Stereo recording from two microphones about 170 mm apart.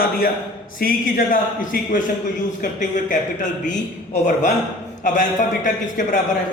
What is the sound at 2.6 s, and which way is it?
Speech, 50° left (ahead or behind).